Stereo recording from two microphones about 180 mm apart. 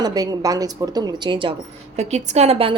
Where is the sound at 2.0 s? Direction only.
40° right (ahead or behind).